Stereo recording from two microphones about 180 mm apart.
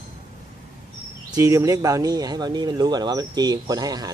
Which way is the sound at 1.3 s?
20° right (ahead or behind).